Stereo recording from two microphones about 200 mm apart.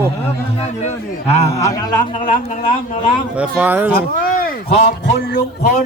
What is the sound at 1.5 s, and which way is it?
Speech, 15° left (ahead or behind).